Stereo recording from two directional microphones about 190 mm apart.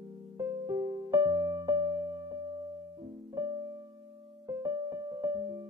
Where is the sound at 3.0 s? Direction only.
20° right (ahead or behind).